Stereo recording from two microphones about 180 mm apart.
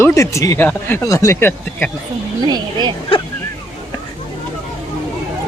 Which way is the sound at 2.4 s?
25° right (ahead or behind).